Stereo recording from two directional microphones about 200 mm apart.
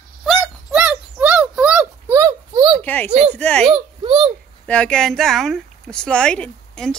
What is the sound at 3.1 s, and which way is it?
Speech, 35° right (ahead or behind).